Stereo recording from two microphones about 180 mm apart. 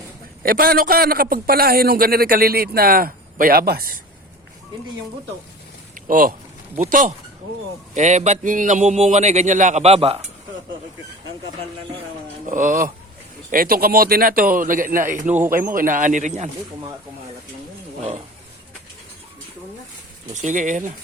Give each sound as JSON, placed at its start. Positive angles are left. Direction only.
{"t": 0.4, "sound": "a man's voice", "side_deg": -55}
{"t": 5.9, "sound": "a sound", "side_deg": -50}
{"t": 7.9, "sound": "a man's voice", "side_deg": -40}
{"t": 12.5, "sound": "a man's voice", "side_deg": -45}
{"t": 20.3, "sound": "a man's voice", "side_deg": -45}